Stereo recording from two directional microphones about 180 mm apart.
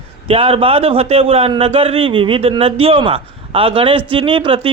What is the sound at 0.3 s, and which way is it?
A man's voice, 30° right (ahead or behind).